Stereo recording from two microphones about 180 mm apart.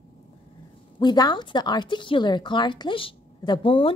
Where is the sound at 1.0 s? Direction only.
25° left (ahead or behind).